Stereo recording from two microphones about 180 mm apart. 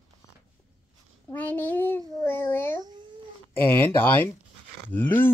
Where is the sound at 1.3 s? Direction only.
10° left (ahead or behind).